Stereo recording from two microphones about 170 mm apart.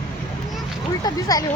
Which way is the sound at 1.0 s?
20° left (ahead or behind).